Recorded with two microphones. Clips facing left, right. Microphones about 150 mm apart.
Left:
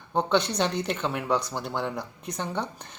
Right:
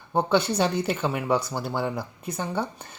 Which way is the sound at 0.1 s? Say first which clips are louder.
Right 2 dB; 5° right (ahead or behind).